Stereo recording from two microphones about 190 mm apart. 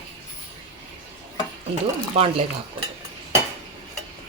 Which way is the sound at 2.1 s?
30° right (ahead or behind).